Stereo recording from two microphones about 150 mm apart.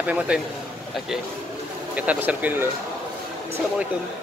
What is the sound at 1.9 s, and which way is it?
Speech, 10° right (ahead or behind).